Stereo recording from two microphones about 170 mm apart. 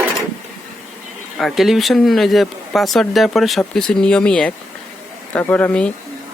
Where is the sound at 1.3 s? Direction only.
Centre (ahead or behind).